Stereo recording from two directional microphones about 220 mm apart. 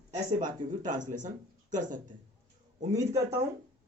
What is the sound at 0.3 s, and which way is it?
Speech, 35° right (ahead or behind).